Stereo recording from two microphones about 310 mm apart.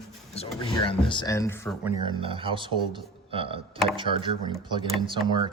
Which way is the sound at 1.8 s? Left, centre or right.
Centre.